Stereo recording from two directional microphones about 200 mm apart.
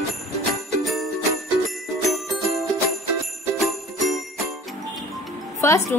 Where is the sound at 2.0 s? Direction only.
Centre (ahead or behind).